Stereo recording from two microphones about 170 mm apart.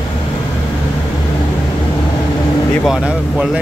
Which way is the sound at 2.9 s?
5° right (ahead or behind).